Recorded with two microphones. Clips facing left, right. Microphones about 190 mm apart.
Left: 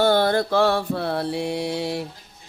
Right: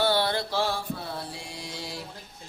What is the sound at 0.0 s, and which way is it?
Mantra, 50° left (ahead or behind).